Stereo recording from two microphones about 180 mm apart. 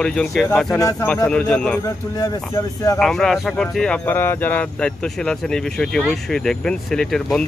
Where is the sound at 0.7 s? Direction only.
20° left (ahead or behind).